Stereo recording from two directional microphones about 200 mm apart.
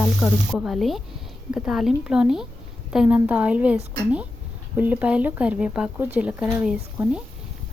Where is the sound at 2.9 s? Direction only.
5° right (ahead or behind).